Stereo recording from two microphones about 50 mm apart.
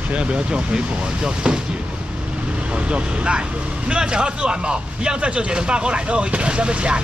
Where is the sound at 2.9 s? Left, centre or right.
Right.